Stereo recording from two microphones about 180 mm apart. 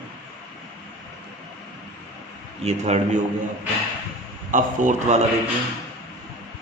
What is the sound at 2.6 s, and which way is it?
Speech, 35° right (ahead or behind).